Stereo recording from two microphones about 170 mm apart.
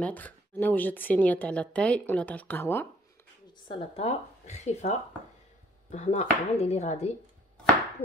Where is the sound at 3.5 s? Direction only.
30° left (ahead or behind).